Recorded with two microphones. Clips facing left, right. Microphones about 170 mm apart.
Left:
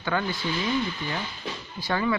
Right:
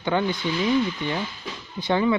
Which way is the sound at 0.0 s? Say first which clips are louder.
Right 4 dB; 20° right (ahead or behind).